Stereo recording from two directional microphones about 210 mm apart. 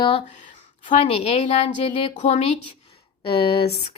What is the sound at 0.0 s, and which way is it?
Speech, 30° left (ahead or behind).